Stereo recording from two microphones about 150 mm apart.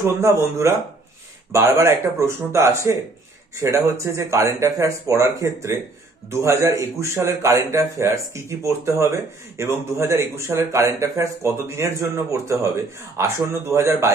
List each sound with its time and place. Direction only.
0.0 s a man's voice: 20° right (ahead or behind)